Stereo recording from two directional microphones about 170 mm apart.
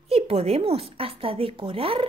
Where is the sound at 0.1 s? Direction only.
35° right (ahead or behind).